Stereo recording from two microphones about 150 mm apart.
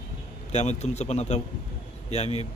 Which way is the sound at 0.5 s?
50° left (ahead or behind).